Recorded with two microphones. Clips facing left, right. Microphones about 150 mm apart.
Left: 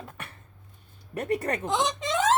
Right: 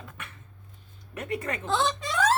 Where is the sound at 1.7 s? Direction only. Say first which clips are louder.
Right 1 dB; 15° left (ahead or behind).